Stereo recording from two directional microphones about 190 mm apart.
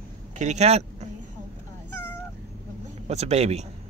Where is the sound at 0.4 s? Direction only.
35° right (ahead or behind).